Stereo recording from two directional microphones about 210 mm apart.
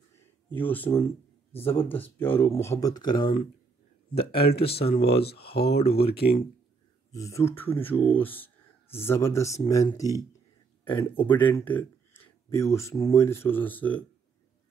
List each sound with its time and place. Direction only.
0.5 s speech: 10° left (ahead or behind); by 4.4 s 25° left (ahead or behind)
4.4 s speech: 50° left (ahead or behind)
4.9 s speech: 30° left (ahead or behind)
5.5 s speech: 50° left (ahead or behind)
7.1 s speech: 15° left (ahead or behind)